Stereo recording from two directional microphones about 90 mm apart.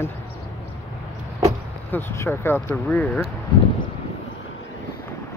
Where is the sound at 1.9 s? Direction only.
30° left (ahead or behind); by 3.2 s 15° left (ahead or behind).